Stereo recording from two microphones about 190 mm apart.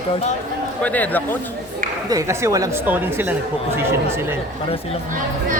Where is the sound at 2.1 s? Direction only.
15° right (ahead or behind).